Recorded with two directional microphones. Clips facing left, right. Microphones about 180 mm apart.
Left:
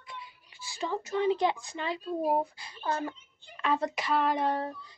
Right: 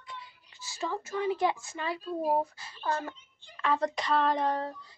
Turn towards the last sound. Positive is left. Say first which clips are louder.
# right 1 dB
turn(degrees=10)  # may be behind; listen again after turning